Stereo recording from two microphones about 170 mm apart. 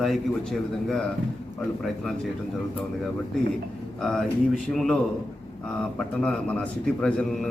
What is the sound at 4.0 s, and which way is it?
A man's voice, 5° left (ahead or behind).